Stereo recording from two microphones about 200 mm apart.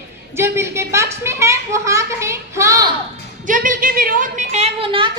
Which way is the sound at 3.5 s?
40° right (ahead or behind).